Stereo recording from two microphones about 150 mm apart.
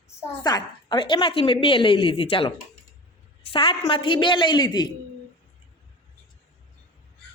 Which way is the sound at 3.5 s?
35° left (ahead or behind).